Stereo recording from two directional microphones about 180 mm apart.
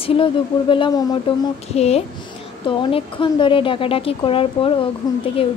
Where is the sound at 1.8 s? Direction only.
35° left (ahead or behind).